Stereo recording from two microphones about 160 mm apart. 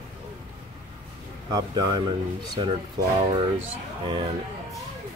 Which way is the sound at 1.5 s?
25° right (ahead or behind).